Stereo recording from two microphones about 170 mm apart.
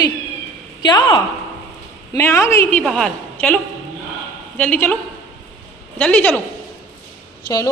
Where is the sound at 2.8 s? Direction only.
5° left (ahead or behind).